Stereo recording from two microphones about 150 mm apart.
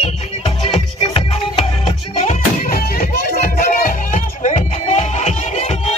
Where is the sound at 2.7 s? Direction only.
75° left (ahead or behind).